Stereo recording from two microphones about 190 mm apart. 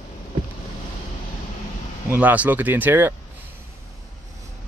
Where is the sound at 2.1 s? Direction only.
10° right (ahead or behind).